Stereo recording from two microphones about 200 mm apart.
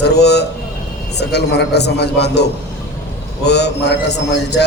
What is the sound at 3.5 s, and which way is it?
A man's voice, 55° left (ahead or behind).